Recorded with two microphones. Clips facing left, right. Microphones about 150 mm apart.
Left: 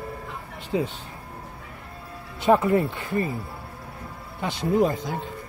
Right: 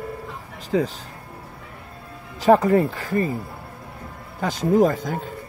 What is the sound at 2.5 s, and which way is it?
Speech, 40° right (ahead or behind).